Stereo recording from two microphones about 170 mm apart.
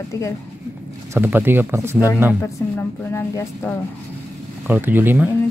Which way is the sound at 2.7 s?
15° left (ahead or behind).